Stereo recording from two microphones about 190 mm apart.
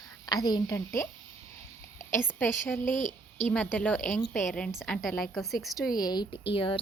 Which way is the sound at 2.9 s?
40° left (ahead or behind).